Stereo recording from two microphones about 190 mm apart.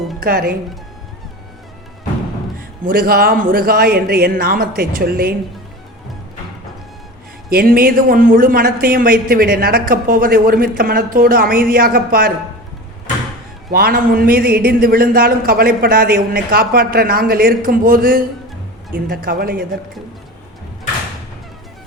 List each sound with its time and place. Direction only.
0.2 s speech: 50° right (ahead or behind)
2.8 s speech: 50° right (ahead or behind)
7.5 s speech: 50° right (ahead or behind)
13.7 s speech: 50° right (ahead or behind)